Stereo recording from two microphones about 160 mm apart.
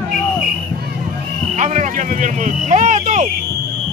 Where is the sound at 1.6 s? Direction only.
45° right (ahead or behind).